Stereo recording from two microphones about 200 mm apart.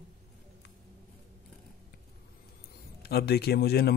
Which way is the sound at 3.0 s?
55° left (ahead or behind).